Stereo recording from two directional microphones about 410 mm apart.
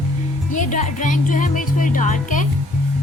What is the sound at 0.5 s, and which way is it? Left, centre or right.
Speech, centre.